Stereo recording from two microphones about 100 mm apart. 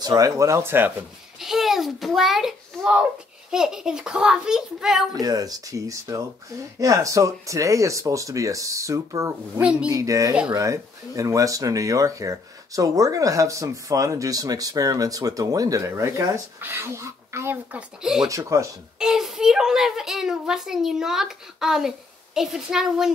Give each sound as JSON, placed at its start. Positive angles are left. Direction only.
{"t": 0.0, "sound": "speech", "side_deg": -35}
{"t": 1.4, "sound": "a child's voice", "side_deg": -5}
{"t": 5.2, "sound": "speech", "side_deg": -40}
{"t": 9.6, "sound": "a child's voice", "side_deg": -10}
{"t": 9.8, "sound": "speech", "side_deg": -35}
{"t": 17.7, "sound": "a child's voice", "side_deg": -5}
{"t": 18.3, "sound": "speech", "side_deg": -30}
{"t": 18.9, "sound": "a child's voice", "side_deg": -5}